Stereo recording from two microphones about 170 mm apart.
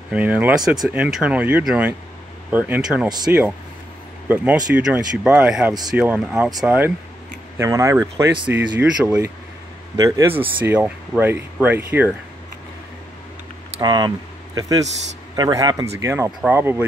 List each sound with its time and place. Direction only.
0.1 s speech: 10° right (ahead or behind)
13.7 s speech: 25° right (ahead or behind)